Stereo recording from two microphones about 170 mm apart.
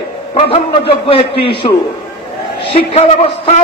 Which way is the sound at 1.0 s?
30° left (ahead or behind).